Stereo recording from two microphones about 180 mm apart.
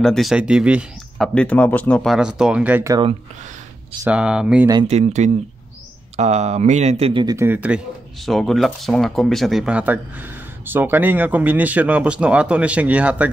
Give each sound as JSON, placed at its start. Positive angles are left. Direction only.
{"t": 0.0, "sound": "speech", "side_deg": 0}
{"t": 4.0, "sound": "speech", "side_deg": -5}
{"t": 4.8, "sound": "speech", "side_deg": -40}
{"t": 7.3, "sound": "speech", "side_deg": -10}